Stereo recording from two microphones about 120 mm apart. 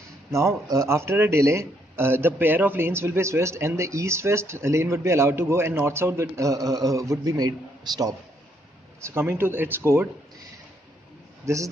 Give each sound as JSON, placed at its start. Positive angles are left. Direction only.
{"t": 0.3, "sound": "speech", "side_deg": -25}
{"t": 9.0, "sound": "speech", "side_deg": -20}